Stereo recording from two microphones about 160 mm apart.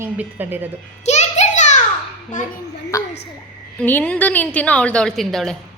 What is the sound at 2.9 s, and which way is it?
A woman's voice, 20° left (ahead or behind).